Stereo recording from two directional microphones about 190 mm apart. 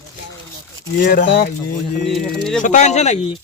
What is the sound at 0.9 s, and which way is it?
Speech, 60° left (ahead or behind).